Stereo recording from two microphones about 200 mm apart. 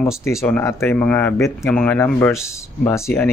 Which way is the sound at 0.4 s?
15° left (ahead or behind).